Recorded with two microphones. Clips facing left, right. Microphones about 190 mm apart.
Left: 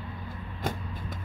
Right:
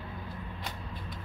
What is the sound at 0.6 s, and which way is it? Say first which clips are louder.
Vehicle: left 7 dB; 45° left (ahead or behind).